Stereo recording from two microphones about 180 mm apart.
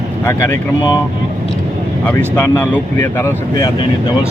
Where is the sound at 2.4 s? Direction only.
10° left (ahead or behind).